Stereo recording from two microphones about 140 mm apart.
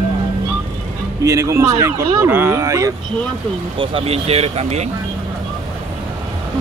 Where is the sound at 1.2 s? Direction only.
20° right (ahead or behind).